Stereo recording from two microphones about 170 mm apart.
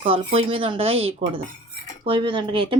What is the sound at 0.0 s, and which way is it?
Speech, 35° right (ahead or behind).